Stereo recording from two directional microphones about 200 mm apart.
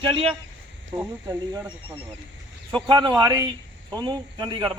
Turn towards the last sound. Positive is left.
turn(degrees=-25)  # may be behind; listen again after turning